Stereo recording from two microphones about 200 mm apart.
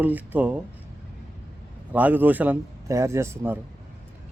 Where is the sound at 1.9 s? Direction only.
10° right (ahead or behind).